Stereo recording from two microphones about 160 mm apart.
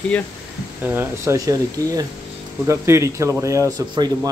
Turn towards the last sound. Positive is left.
turn(degrees=-20)  # may be behind; listen again after turning